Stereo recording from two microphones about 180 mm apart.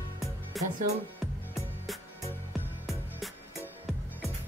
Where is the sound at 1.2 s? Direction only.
Centre (ahead or behind).